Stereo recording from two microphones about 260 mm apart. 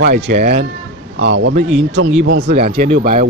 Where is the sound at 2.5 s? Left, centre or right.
Right.